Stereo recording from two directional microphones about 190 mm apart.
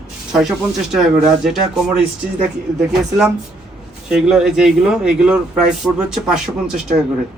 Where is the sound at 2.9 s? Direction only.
5° right (ahead or behind).